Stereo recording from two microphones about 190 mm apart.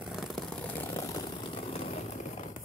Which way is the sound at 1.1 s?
25° left (ahead or behind).